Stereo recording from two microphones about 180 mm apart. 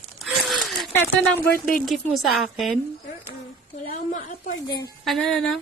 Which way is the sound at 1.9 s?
Centre (ahead or behind).